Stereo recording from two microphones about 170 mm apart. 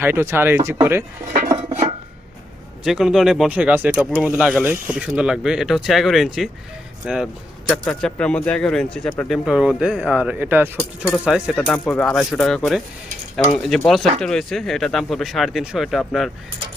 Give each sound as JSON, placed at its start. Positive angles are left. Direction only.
{"t": 0.0, "sound": "speech", "side_deg": -15}
{"t": 1.5, "sound": "dishes", "side_deg": -40}
{"t": 2.8, "sound": "speech", "side_deg": -5}